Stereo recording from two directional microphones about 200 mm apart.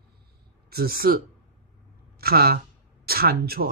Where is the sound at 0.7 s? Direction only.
50° right (ahead or behind).